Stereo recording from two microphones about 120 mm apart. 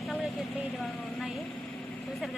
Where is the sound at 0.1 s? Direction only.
Centre (ahead or behind).